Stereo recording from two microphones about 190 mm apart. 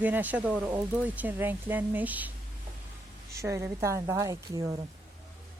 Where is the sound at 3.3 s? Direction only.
15° right (ahead or behind).